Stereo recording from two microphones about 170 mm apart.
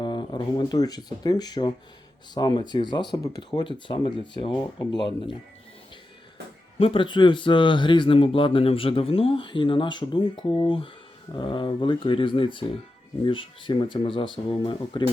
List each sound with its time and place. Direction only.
0.0 s speech: 25° left (ahead or behind)
6.7 s speech: 30° left (ahead or behind)